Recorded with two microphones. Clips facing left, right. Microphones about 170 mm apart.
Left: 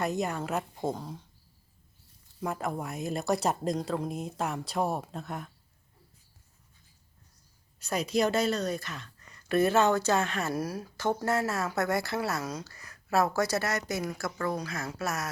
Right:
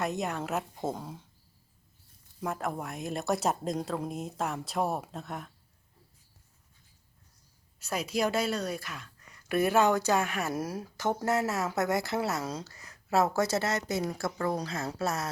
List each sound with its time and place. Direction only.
0.0 s speech: centre (ahead or behind)
2.4 s speech: centre (ahead or behind)
7.8 s a woman's voice: 5° right (ahead or behind); by 15.3 s 30° right (ahead or behind)